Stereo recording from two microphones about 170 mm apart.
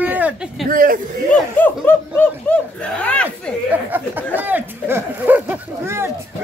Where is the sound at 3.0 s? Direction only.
10° left (ahead or behind).